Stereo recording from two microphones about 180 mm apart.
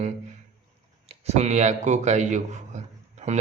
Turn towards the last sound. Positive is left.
turn(degrees=-40)  # may be behind; listen again after turning